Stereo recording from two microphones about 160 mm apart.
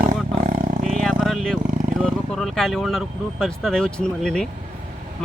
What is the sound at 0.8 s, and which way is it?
Vehicle, centre (ahead or behind).